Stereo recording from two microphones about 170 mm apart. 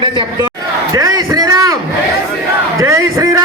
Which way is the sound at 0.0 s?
30° right (ahead or behind).